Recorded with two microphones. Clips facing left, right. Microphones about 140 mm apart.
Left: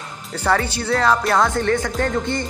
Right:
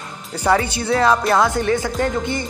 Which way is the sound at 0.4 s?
15° right (ahead or behind).